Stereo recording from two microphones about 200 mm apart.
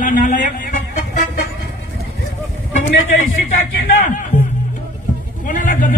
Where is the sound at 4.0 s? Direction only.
40° left (ahead or behind).